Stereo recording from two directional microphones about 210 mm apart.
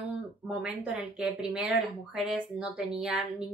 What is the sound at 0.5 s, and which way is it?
Speech, 5° right (ahead or behind).